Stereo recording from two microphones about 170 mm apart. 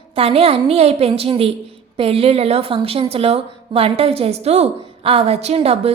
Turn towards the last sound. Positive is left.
turn(degrees=-35)  # may be behind; listen again after turning